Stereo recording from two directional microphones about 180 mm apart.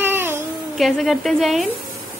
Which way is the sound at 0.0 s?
10° right (ahead or behind).